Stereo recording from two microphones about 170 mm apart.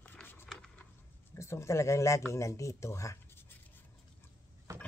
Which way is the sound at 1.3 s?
15° left (ahead or behind).